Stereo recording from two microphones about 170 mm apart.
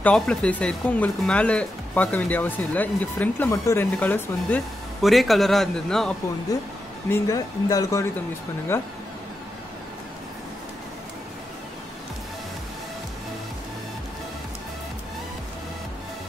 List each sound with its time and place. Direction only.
0.0 s a man's voice: 5° left (ahead or behind)
7.1 s speech: 20° left (ahead or behind)